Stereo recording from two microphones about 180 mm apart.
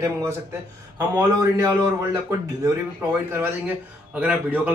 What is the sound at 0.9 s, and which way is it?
Speech, 20° right (ahead or behind).